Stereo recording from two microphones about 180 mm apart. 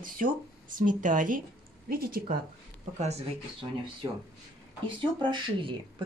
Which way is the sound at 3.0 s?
40° right (ahead or behind).